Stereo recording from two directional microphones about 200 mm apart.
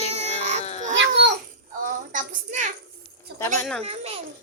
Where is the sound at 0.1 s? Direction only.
35° right (ahead or behind).